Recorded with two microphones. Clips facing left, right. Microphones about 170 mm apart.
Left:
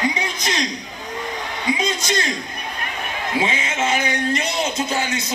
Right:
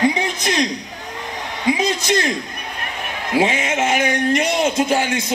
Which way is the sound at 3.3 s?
60° right (ahead or behind).